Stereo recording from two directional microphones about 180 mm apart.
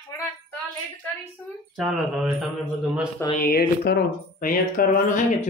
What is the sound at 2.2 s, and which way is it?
Speech, centre (ahead or behind).